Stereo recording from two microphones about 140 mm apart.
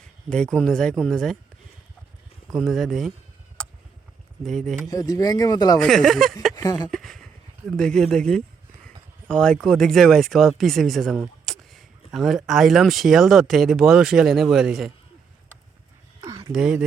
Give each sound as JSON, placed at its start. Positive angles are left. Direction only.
{"t": 0.3, "sound": "speech", "side_deg": 5}
{"t": 2.5, "sound": "speech", "side_deg": 0}
{"t": 4.4, "sound": "speech", "side_deg": 0}
{"t": 4.9, "sound": "speech", "side_deg": 25}
{"t": 5.8, "sound": "speech", "side_deg": 0}
{"t": 6.6, "sound": "speech", "side_deg": 25}
{"t": 6.9, "sound": "speech", "side_deg": 0}
{"t": 16.5, "sound": "speech", "side_deg": -5}